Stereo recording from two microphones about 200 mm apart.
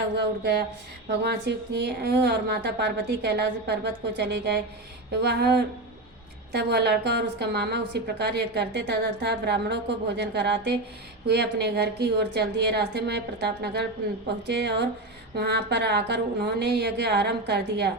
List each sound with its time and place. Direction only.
0.2 s a woman's voice: 55° right (ahead or behind)